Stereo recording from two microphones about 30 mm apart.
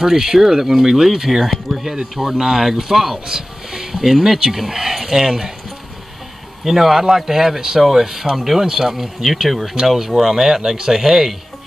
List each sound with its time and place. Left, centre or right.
0.0 s speech: right
1.7 s speech: centre
2.1 s speech: centre
3.3 s a sound: centre
4.4 s speech: centre
6.6 s speech: centre